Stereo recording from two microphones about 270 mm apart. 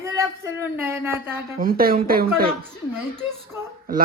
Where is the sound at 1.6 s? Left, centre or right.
Right.